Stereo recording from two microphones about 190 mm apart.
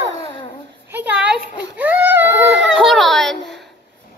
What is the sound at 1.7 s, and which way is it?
Baby cry, 10° right (ahead or behind).